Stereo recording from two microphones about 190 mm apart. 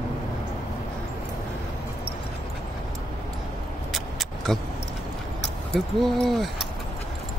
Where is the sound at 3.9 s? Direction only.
Centre (ahead or behind).